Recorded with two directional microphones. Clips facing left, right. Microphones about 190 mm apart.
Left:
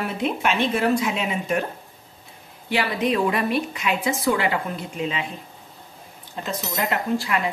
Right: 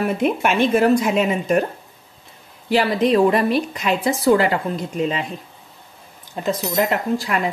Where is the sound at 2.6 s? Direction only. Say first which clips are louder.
Right 6 dB; 35° right (ahead or behind).